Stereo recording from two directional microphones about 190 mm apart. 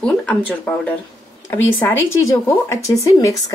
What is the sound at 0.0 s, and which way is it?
Speech, 5° left (ahead or behind).